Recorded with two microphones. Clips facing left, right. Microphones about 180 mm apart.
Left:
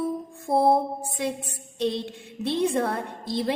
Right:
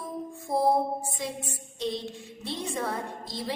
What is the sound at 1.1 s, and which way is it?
A woman's voice, 60° left (ahead or behind).